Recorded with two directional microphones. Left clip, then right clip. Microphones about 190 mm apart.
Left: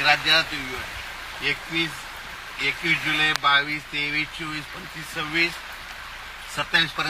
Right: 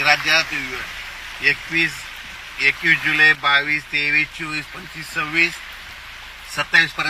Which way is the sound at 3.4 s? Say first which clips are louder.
Right 2 dB; 30° right (ahead or behind).